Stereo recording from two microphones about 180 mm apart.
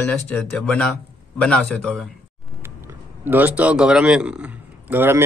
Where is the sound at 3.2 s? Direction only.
10° right (ahead or behind).